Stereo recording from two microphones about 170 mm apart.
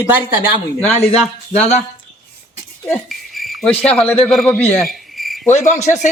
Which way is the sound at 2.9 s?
Centre (ahead or behind).